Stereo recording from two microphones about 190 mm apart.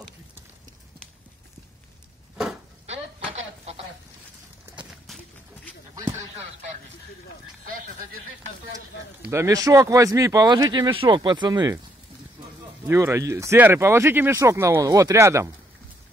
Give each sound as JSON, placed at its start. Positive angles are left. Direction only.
{"t": 4.7, "sound": "horse", "side_deg": 0}
{"t": 9.3, "sound": "speech", "side_deg": -15}
{"t": 12.8, "sound": "speech", "side_deg": -15}